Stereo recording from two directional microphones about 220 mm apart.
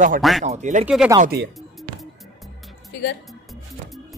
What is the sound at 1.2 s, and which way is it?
Speech, 45° right (ahead or behind).